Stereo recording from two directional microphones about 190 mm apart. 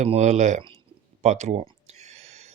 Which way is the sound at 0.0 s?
35° right (ahead or behind).